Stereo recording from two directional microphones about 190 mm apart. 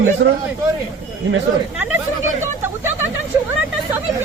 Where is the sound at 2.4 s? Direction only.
10° right (ahead or behind).